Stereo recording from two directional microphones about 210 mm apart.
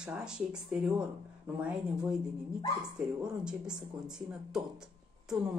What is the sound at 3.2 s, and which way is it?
Speech, 5° right (ahead or behind).